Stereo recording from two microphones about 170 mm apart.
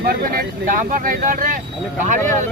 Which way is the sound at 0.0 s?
60° right (ahead or behind).